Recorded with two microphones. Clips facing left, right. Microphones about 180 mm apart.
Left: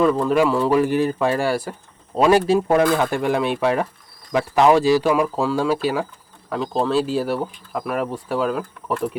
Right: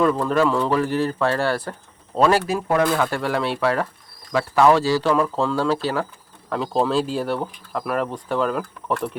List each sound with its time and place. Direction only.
0.0 s speech: 5° left (ahead or behind)
2.5 s speech: 25° left (ahead or behind)
6.5 s speech: centre (ahead or behind)